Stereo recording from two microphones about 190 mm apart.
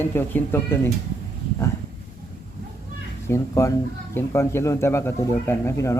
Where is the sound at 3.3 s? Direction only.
15° left (ahead or behind).